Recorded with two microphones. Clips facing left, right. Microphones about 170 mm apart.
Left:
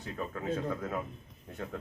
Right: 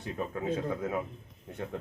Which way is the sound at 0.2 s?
15° right (ahead or behind).